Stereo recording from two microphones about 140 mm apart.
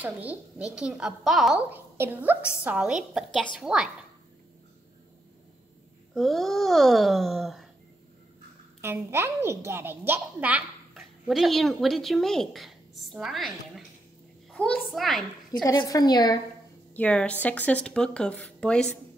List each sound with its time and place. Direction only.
0.0 s speech: 10° right (ahead or behind)
1.7 s a woman's voice: 15° right (ahead or behind)
6.1 s speech: centre (ahead or behind)
8.8 s a woman's voice: 15° right (ahead or behind)
11.2 s speech: centre (ahead or behind)
15.5 s a woman's voice: 30° left (ahead or behind)
16.9 s speech: 10° left (ahead or behind)